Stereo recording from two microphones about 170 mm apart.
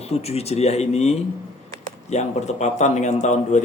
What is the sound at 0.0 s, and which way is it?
A man's voice, 35° left (ahead or behind).